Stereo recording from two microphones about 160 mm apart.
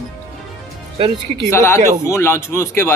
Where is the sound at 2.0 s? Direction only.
15° left (ahead or behind).